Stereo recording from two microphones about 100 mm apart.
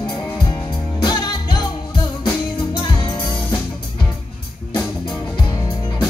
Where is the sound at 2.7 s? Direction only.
55° left (ahead or behind).